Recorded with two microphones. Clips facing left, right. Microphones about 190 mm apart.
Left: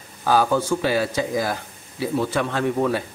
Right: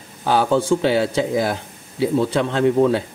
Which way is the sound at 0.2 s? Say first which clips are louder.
Right 2 dB; 20° right (ahead or behind).